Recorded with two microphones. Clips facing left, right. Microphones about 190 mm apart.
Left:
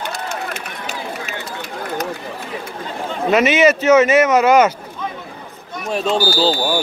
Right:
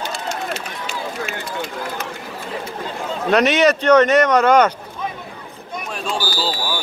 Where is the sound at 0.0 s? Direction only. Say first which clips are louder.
Even; 55° left (ahead or behind).